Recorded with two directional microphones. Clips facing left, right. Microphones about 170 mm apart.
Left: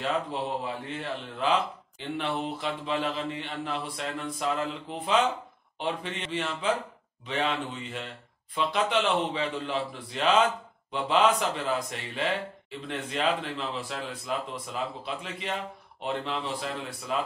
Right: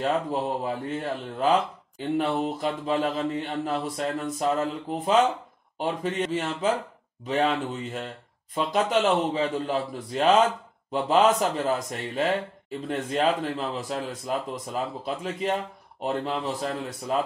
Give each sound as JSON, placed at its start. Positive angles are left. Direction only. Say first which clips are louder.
{"t": 0.0, "sound": "speech", "louder": "right 4 dB", "side_deg": -40}